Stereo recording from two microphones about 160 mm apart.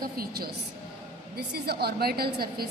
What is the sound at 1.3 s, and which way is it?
A woman's voice, 80° right.